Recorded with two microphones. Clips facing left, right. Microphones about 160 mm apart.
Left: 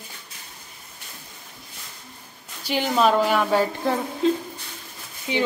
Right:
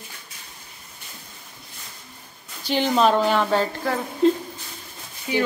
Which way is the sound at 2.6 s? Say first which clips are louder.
Right 1 dB; 5° left (ahead or behind).